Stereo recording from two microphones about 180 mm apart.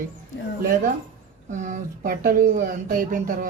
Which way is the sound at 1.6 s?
45° right (ahead or behind).